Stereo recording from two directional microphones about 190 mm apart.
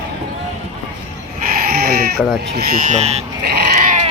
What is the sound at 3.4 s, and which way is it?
Goat, 60° right (ahead or behind).